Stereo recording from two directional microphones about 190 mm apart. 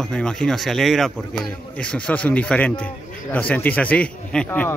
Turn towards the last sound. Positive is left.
turn(degrees=5)  # may be behind; listen again after turning